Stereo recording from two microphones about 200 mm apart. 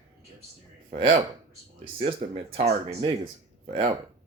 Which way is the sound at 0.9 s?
25° right (ahead or behind).